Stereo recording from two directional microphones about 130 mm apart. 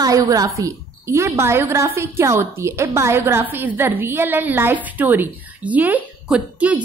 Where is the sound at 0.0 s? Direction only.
25° right (ahead or behind).